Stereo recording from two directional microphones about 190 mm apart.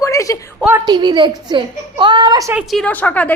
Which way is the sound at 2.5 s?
Centre (ahead or behind).